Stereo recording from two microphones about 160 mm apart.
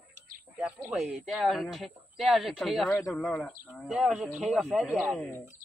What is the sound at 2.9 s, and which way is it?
Speech, 20° left (ahead or behind).